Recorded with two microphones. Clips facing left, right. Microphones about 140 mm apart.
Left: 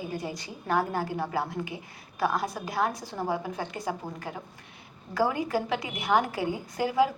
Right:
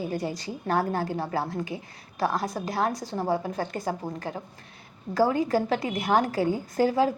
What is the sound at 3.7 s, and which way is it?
Speech, 45° right (ahead or behind).